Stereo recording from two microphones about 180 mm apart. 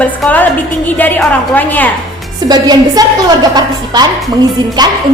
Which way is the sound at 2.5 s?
20° right (ahead or behind).